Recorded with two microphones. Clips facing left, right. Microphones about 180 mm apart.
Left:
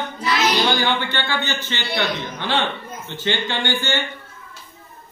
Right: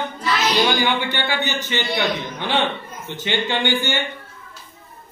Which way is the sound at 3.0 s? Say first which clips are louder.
Right 1 dB; 15° right (ahead or behind).